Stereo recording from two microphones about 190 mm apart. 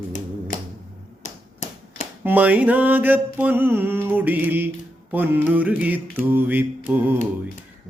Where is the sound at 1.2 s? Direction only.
45° left (ahead or behind).